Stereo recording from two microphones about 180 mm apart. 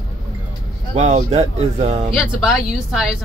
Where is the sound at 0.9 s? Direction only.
35° right (ahead or behind).